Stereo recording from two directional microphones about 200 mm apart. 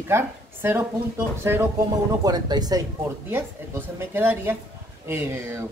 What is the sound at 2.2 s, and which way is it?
Speech, 20° right (ahead or behind).